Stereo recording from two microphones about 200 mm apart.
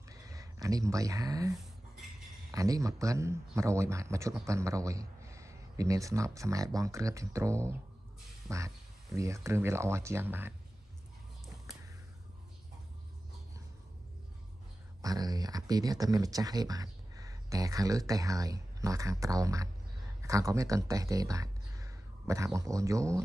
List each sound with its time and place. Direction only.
0.1 s a sound: 15° right (ahead or behind)
2.5 s a man's voice: 15° right (ahead or behind)
15.0 s speech: 20° right (ahead or behind)